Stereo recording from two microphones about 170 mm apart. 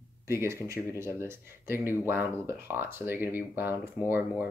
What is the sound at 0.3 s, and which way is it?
Speech, 15° right (ahead or behind).